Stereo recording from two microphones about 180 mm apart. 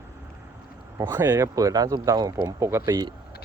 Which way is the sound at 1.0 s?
15° right (ahead or behind).